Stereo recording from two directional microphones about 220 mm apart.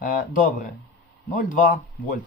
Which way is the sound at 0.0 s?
35° left (ahead or behind).